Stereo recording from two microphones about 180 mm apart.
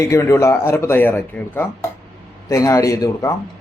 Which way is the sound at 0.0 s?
15° left (ahead or behind).